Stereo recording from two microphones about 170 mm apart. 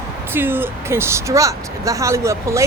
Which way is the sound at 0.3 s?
10° right (ahead or behind).